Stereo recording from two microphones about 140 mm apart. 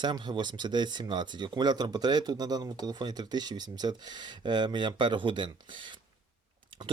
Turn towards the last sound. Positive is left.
turn(degrees=-35)  # may be behind; listen again after turning